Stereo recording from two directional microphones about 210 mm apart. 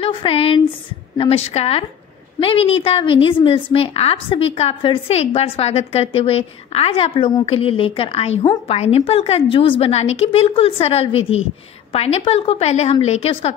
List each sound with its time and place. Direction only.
0.0 s a woman's voice: 25° left (ahead or behind)